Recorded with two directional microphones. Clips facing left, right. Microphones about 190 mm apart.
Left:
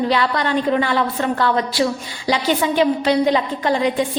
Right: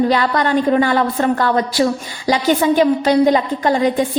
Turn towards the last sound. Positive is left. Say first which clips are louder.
# right 3 dB
turn(degrees=-40)  # may be behind; listen again after turning